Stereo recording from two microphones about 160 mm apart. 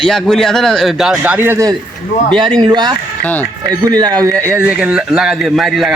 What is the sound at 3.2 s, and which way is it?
Speech, 10° left (ahead or behind).